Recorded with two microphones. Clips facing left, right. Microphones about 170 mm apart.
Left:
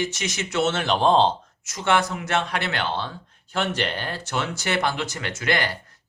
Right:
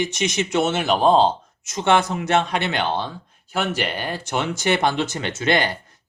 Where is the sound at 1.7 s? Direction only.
20° right (ahead or behind).